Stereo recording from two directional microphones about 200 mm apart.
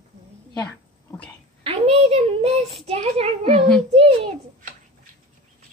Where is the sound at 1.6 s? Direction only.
30° right (ahead or behind).